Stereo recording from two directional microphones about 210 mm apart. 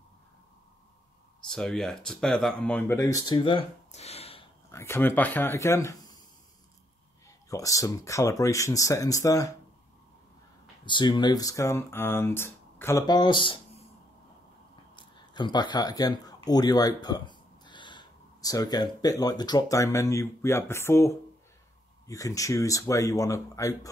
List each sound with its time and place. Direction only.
1.5 s speech: centre (ahead or behind); by 4.5 s 30° left (ahead or behind)
4.6 s speech: 10° left (ahead or behind)
7.2 s speech: 15° left (ahead or behind)
10.9 s speech: 20° left (ahead or behind)
15.0 s speech: 20° left (ahead or behind)